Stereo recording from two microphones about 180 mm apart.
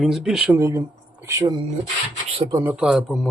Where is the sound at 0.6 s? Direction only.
15° right (ahead or behind).